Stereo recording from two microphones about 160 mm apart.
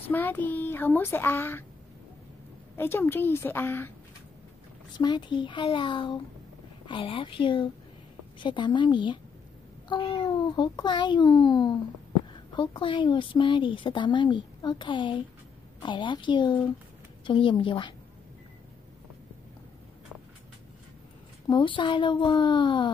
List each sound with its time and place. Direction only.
0.1 s speech: 10° left (ahead or behind)
2.7 s speech: 15° left (ahead or behind)
4.9 s a child's voice: 25° left (ahead or behind)
21.5 s a woman's voice: 30° left (ahead or behind)